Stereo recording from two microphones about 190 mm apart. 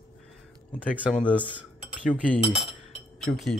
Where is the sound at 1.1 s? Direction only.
5° left (ahead or behind).